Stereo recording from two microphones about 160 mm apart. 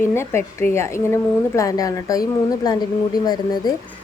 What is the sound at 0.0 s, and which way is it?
A woman's voice, 15° left (ahead or behind).